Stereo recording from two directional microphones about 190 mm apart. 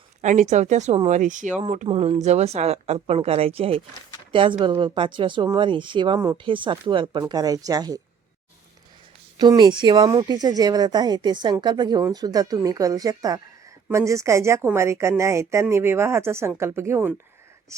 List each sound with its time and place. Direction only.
0.2 s a woman's voice: 40° right (ahead or behind); by 8.0 s 20° right (ahead or behind)
9.4 s speech: 25° right (ahead or behind)